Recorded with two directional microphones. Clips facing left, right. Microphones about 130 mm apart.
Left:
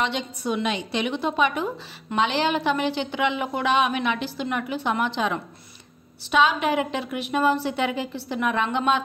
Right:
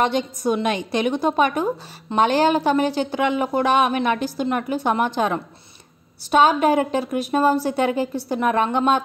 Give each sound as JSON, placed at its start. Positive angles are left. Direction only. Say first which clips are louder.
{"t": 0.0, "sound": "a woman's voice", "louder": "right 6 dB", "side_deg": -45}